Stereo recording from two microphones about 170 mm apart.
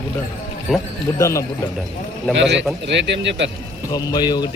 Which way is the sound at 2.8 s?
90° right.